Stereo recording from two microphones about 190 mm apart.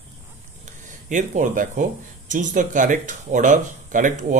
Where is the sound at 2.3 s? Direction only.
40° right (ahead or behind).